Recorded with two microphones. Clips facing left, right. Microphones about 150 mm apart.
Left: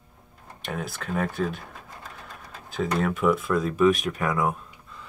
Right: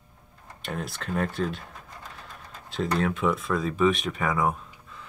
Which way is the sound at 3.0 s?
5° left (ahead or behind).